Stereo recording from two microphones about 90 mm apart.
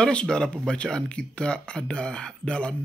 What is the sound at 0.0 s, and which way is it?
Speech, 10° left (ahead or behind).